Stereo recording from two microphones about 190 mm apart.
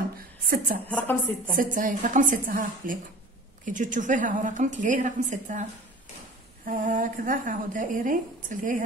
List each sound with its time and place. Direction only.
0.2 s a sound: 50° right (ahead or behind)
0.8 s speech: 10° left (ahead or behind)
1.6 s a woman's voice: 45° right (ahead or behind)